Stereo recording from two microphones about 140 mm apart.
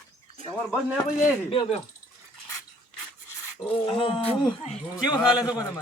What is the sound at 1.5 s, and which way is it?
Speech, 40° left (ahead or behind).